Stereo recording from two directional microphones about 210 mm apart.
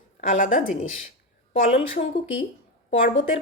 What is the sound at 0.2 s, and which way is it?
Speech, 35° left (ahead or behind).